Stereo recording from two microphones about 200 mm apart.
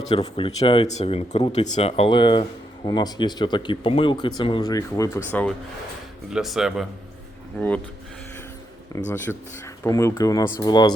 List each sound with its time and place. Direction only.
0.1 s speech: 25° left (ahead or behind); by 6.8 s centre (ahead or behind)
8.9 s speech: 20° left (ahead or behind)
9.3 s speech: 10° left (ahead or behind)